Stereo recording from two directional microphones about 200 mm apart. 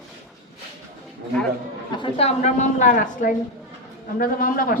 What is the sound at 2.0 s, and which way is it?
A woman's voice, 30° left (ahead or behind).